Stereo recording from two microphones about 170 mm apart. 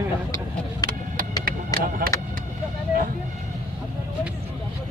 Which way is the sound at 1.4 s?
60° right (ahead or behind).